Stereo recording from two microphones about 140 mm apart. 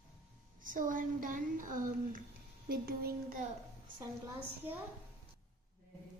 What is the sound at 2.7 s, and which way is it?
Speech, 90° right.